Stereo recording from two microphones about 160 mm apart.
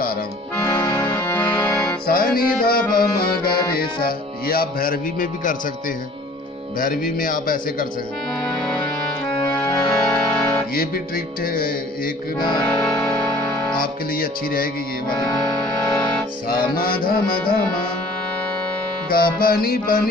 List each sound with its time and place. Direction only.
0.7 s music: 15° left (ahead or behind)
2.0 s music: 70° left (ahead or behind)
6.8 s music: 60° left (ahead or behind)
9.5 s music: 20° left (ahead or behind)
11.4 s music: 65° left (ahead or behind)
12.6 s music: 10° left (ahead or behind)
13.7 s music: 65° left (ahead or behind)
15.1 s music: 25° left (ahead or behind)
16.7 s music: 65° left (ahead or behind)
19.0 s music: 65° left (ahead or behind)